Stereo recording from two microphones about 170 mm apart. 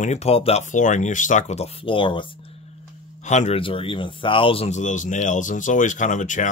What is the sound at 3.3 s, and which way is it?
Speech, 40° left (ahead or behind).